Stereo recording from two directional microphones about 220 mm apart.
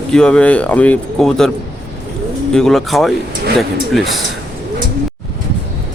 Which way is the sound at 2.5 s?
Centre (ahead or behind).